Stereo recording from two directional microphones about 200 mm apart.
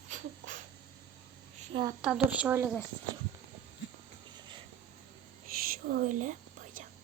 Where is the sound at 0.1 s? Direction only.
40° right (ahead or behind).